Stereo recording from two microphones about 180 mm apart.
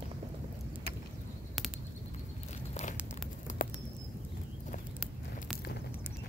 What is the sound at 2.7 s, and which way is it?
Crumpling, 40° left (ahead or behind).